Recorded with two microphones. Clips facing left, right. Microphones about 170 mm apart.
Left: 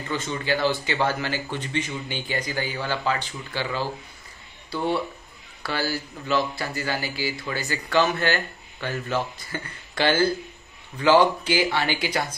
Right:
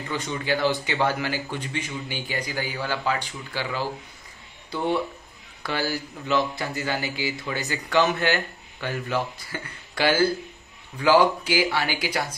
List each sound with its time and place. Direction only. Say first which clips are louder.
0.1 s speech: left 1 dB; 15° right (ahead or behind)